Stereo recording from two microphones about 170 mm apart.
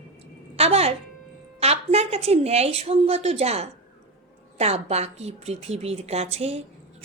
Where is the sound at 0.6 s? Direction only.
35° right (ahead or behind).